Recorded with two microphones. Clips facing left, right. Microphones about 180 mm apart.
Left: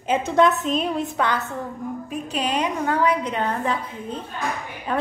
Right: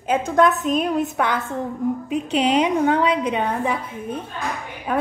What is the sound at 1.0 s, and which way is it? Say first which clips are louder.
A woman's voice: right 2 dB; 10° right (ahead or behind).